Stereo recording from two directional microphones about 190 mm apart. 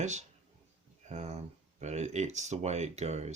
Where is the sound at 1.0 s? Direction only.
35° right (ahead or behind).